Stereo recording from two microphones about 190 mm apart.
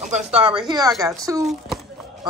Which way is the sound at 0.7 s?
20° right (ahead or behind).